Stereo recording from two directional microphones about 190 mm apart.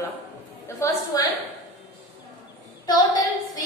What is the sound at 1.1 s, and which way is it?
Speech, 20° left (ahead or behind).